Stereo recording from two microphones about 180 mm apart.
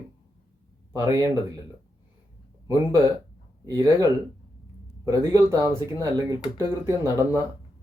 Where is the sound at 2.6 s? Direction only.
15° right (ahead or behind).